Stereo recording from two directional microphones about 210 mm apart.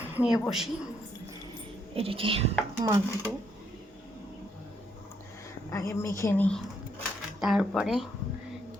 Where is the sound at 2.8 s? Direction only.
15° right (ahead or behind).